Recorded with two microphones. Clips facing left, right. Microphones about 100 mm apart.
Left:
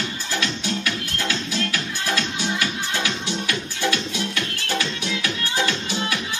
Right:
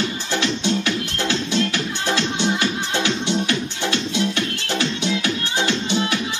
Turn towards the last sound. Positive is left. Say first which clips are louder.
# right 4 dB
turn(degrees=-25)  # may be behind; listen again after turning